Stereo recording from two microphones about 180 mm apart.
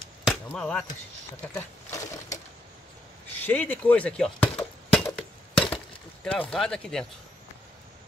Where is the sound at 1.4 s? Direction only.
15° left (ahead or behind).